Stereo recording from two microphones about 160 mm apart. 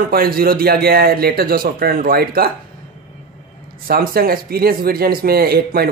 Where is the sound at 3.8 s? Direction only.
70° right (ahead or behind).